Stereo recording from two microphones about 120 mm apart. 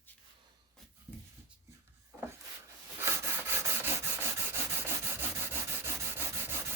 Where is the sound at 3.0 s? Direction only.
20° right (ahead or behind).